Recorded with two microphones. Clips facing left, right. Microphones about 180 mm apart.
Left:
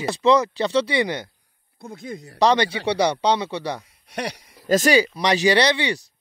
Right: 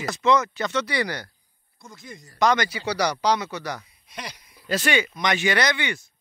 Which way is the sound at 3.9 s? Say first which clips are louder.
Left 9 dB; 70° left (ahead or behind).